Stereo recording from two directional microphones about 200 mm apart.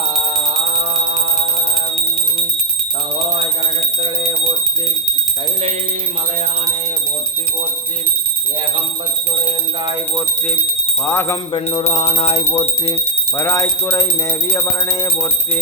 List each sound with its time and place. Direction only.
4.0 s alarm: 30° right (ahead or behind)
11.0 s speech: 10° left (ahead or behind)
11.5 s a sound: 30° left (ahead or behind)
12.9 s speech: 10° left (ahead or behind)